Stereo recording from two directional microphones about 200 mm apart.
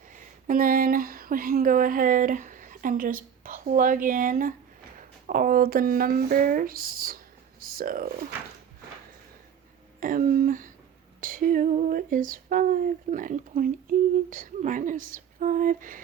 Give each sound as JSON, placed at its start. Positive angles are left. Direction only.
{"t": 0.1, "sound": "speech", "side_deg": -40}
{"t": 10.0, "sound": "speech", "side_deg": -45}
{"t": 11.2, "sound": "female singing", "side_deg": -45}